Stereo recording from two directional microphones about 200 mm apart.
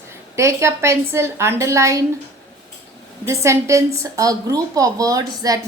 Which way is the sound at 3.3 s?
15° right (ahead or behind).